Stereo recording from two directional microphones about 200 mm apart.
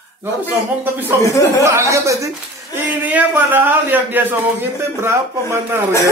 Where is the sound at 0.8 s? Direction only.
10° right (ahead or behind).